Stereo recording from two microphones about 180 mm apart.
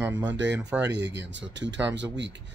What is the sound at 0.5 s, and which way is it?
Speech, 10° right (ahead or behind).